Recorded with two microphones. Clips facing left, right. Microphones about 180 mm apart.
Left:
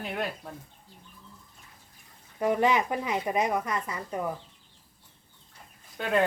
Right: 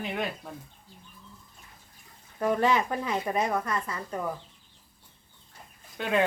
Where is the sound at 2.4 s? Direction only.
15° left (ahead or behind).